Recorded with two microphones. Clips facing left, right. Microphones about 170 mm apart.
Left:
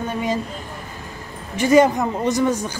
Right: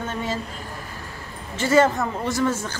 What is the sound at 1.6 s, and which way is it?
Speech, 15° left (ahead or behind).